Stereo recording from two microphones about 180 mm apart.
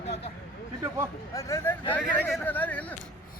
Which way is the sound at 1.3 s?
15° left (ahead or behind).